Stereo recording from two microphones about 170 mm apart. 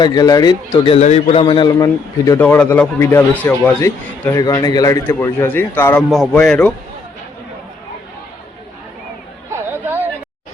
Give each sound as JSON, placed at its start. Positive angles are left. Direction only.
{"t": 0.0, "sound": "a man's voice", "side_deg": 20}
{"t": 0.9, "sound": "a man's voice", "side_deg": 40}
{"t": 9.5, "sound": "chatter", "side_deg": -15}